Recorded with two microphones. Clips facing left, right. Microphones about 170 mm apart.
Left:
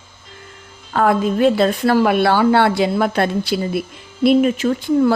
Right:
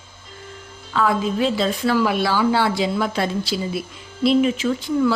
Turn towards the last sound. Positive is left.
turn(degrees=50)  # may be behind; listen again after turning